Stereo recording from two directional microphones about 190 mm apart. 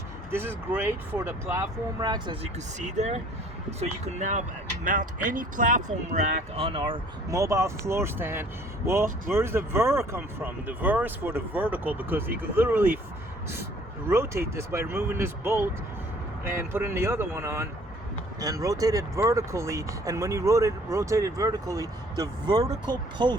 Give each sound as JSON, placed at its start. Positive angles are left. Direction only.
{"t": 0.3, "sound": "speech", "side_deg": -10}
{"t": 6.7, "sound": "speech", "side_deg": -25}
{"t": 14.1, "sound": "speech", "side_deg": -15}